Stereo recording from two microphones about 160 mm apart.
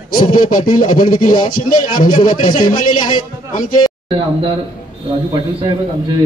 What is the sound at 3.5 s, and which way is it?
Speech, 60° left (ahead or behind).